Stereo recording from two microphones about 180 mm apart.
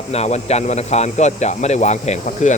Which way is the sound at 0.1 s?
35° left (ahead or behind).